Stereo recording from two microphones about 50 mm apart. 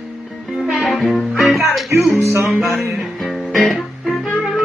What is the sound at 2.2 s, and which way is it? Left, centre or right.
Music, right.